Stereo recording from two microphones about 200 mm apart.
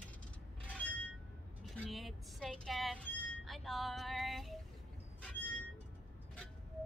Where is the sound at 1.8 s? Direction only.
Centre (ahead or behind).